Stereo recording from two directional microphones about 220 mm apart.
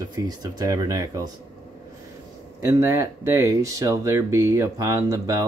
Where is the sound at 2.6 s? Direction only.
15° right (ahead or behind).